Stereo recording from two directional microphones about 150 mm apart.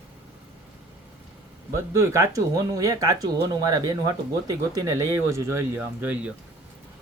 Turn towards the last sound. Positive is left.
turn(degrees=-10)  # may be behind; listen again after turning